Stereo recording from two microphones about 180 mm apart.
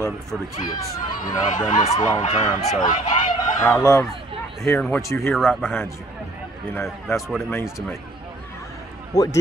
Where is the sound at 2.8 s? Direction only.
45° left (ahead or behind).